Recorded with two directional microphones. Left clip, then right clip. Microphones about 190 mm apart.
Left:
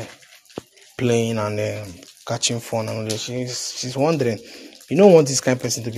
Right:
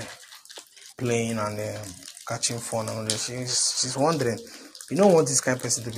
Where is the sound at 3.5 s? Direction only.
45° left (ahead or behind).